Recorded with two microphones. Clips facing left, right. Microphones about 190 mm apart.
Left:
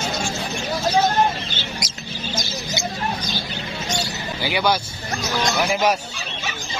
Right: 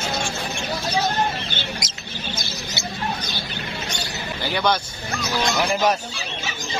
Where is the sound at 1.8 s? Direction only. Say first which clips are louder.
Left 3 dB; 25° right (ahead or behind).